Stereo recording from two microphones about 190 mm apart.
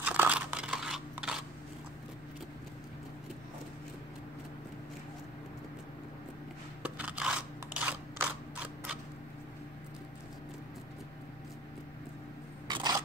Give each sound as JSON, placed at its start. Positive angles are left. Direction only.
{"t": 0.0, "sound": "crunch", "side_deg": -10}
{"t": 6.8, "sound": "scissors", "side_deg": -10}
{"t": 12.6, "sound": "a sound", "side_deg": -20}